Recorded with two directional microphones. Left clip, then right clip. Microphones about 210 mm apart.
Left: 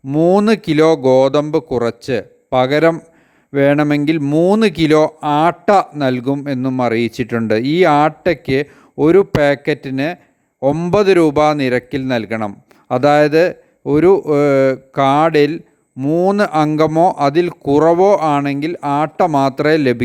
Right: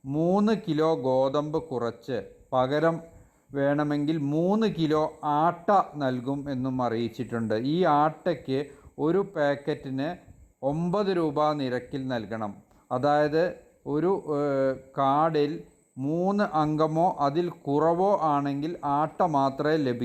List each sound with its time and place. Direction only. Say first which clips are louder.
0.1 s speech: left 13 dB; 35° left (ahead or behind)